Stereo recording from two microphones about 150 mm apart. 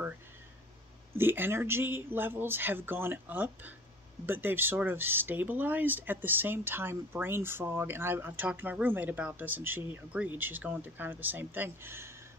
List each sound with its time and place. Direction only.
1.1 s speech: 15° right (ahead or behind)